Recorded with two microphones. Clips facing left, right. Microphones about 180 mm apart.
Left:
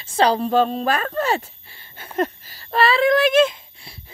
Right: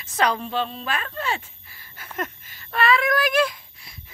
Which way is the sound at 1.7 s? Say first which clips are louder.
Even; 30° left (ahead or behind).